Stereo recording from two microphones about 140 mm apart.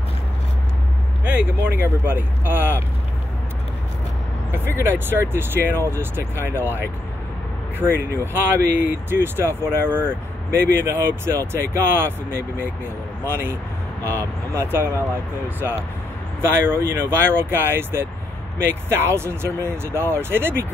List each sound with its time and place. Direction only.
1.2 s speech: 10° right (ahead or behind)
4.5 s speech: 15° right (ahead or behind)
7.8 s speech: 15° right (ahead or behind)
16.3 s speech: 15° right (ahead or behind)